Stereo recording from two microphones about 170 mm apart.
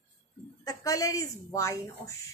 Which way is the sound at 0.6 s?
20° left (ahead or behind).